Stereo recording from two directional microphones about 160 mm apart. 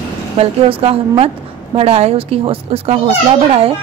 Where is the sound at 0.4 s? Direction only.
35° right (ahead or behind).